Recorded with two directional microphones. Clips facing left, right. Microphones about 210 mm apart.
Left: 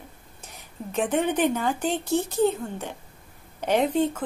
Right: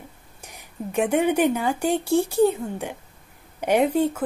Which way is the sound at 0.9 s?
10° right (ahead or behind).